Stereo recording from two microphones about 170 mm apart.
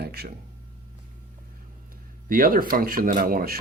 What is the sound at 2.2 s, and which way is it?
Speech, 55° right (ahead or behind).